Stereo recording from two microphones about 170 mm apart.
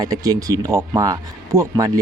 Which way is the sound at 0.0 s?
20° right (ahead or behind).